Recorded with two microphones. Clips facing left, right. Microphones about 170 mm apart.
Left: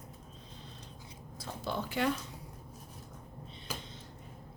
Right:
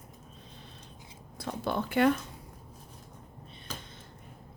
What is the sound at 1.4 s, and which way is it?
Speech, 60° right (ahead or behind).